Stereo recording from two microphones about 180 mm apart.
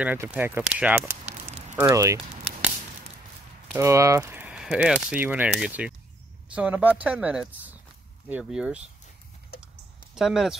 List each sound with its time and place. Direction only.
0.0 s speech: 10° right (ahead or behind)
1.2 s a sound: 40° right (ahead or behind)
1.8 s speech: 15° right (ahead or behind)
3.7 s speech: 15° right (ahead or behind)
10.1 s speech: 5° right (ahead or behind)